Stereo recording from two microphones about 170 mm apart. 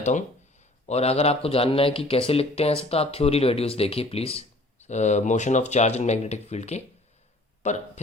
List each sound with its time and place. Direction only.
0.0 s speech: 45° left (ahead or behind)